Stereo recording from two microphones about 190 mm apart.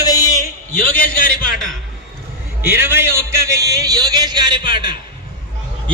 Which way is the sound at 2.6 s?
10° right (ahead or behind).